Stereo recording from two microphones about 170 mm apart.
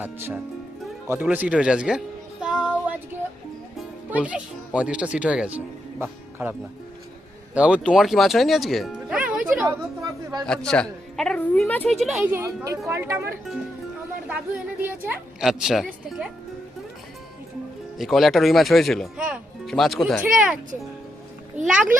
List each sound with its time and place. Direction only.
0.0 s speech: 10° right (ahead or behind)
2.4 s music: 5° right (ahead or behind)
3.8 s speech: 10° right (ahead or behind)
9.6 s a sound: 20° right (ahead or behind)
10.4 s a woman's voice: 5° left (ahead or behind)
12.6 s speech: 20° right (ahead or behind)
14.8 s speech: 10° right (ahead or behind)
17.9 s speech: centre (ahead or behind)
21.7 s speech: 10° right (ahead or behind)